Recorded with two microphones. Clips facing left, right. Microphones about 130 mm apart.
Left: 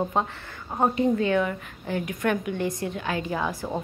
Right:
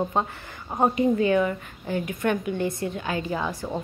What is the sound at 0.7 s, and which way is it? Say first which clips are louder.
A woman's voice: right 1 dB; 10° right (ahead or behind).